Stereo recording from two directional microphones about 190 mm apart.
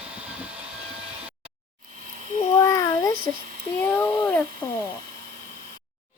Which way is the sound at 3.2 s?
50° right (ahead or behind).